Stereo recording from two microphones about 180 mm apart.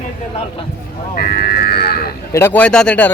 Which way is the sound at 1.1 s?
55° left (ahead or behind).